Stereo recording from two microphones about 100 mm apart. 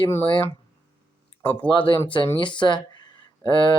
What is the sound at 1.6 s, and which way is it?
Speech, 55° left (ahead or behind).